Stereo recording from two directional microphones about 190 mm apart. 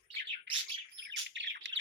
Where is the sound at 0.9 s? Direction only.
65° right (ahead or behind).